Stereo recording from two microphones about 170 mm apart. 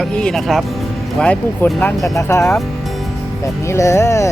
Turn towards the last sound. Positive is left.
turn(degrees=15)  # may be behind; listen again after turning